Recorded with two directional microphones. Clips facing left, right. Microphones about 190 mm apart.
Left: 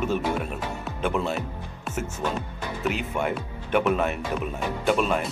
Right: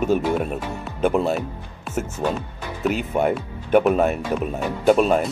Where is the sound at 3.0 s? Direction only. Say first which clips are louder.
Right 6 dB; 40° right (ahead or behind).